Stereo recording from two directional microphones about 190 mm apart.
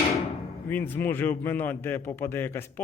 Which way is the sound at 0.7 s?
10° left (ahead or behind).